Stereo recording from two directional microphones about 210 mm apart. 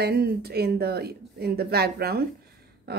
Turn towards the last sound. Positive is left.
turn(degrees=-50)  # may be behind; listen again after turning